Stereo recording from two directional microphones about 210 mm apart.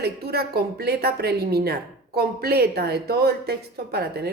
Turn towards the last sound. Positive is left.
turn(degrees=-50)  # may be behind; listen again after turning